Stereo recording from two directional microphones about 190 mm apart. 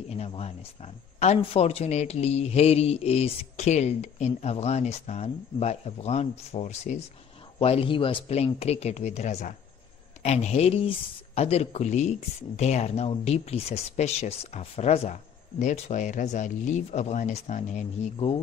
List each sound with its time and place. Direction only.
0.1 s speech: 35° left (ahead or behind)